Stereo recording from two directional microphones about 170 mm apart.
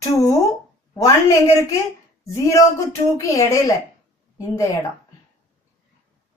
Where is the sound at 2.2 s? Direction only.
20° left (ahead or behind).